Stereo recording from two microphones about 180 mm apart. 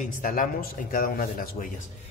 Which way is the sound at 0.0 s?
45° left (ahead or behind).